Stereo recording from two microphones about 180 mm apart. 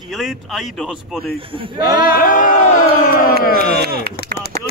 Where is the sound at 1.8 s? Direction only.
55° left (ahead or behind).